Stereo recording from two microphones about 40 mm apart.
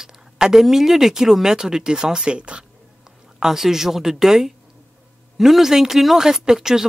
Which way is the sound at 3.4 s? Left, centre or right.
Centre.